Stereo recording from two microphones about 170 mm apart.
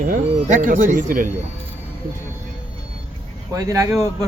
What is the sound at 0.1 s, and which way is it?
Speech, 50° right (ahead or behind).